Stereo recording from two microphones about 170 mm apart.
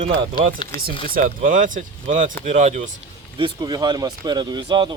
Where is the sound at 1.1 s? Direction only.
50° right (ahead or behind).